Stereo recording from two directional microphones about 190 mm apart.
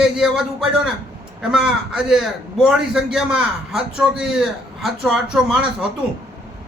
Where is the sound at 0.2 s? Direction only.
Centre (ahead or behind).